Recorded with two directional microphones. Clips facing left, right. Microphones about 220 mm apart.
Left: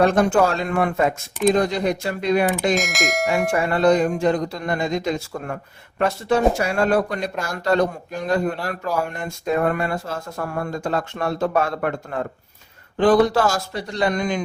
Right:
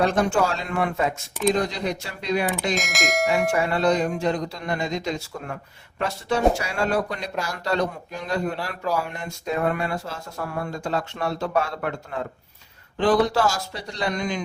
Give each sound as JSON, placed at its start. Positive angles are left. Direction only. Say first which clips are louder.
{"t": 0.0, "sound": "speech", "louder": "left 4 dB", "side_deg": 55}
{"t": 2.7, "sound": "speech", "louder": "left 3 dB", "side_deg": 0}
{"t": 3.5, "sound": "speech", "louder": "left 4 dB", "side_deg": 50}